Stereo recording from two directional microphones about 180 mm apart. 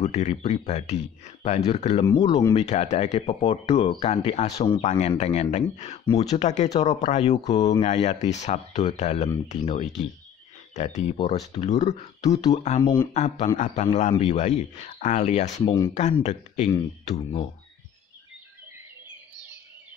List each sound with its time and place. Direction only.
0.0 s speech: 40° left (ahead or behind)
2.0 s speech: 20° left (ahead or behind)
2.6 s speech: 40° left (ahead or behind)
4.6 s speech: 25° left (ahead or behind)
4.8 s speech: 40° left (ahead or behind)